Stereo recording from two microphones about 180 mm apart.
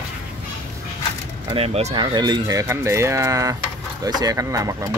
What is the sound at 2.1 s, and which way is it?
Speech, 25° right (ahead or behind).